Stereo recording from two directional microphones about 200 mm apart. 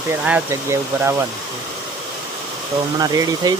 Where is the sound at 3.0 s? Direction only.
20° right (ahead or behind).